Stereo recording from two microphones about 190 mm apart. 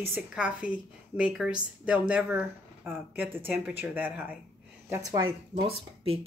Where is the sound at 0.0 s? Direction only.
5° right (ahead or behind).